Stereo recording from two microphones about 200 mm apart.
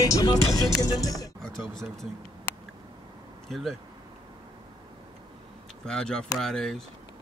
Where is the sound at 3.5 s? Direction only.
Centre (ahead or behind).